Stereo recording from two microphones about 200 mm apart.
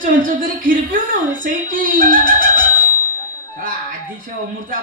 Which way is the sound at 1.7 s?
45° right (ahead or behind).